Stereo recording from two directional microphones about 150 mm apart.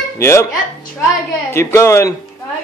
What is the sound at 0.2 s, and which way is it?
Speech, 15° left (ahead or behind).